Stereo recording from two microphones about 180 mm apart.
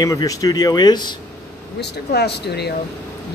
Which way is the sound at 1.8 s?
65° left (ahead or behind).